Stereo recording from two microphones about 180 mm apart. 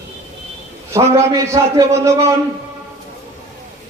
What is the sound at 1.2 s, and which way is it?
A man's voice, 15° right (ahead or behind).